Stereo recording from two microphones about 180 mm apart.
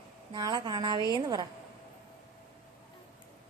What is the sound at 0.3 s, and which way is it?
A woman's voice, 25° right (ahead or behind).